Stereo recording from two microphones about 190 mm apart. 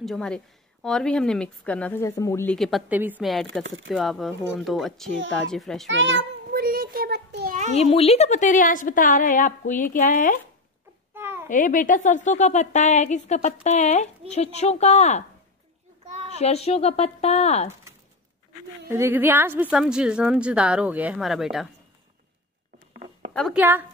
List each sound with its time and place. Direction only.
0.0 s speech: centre (ahead or behind)
2.5 s speech: centre (ahead or behind)
5.9 s a sound: 75° right (ahead or behind); by 7.5 s 55° right (ahead or behind)
7.7 s a woman's voice: 35° left (ahead or behind)
11.1 s a sound: 10° right (ahead or behind)
11.4 s a woman's voice: 45° left (ahead or behind)
16.3 s a woman's voice: 35° left (ahead or behind)
18.9 s speech: 10° right (ahead or behind)
23.3 s a woman's voice: centre (ahead or behind)
23.6 s a woman's voice: 10° right (ahead or behind)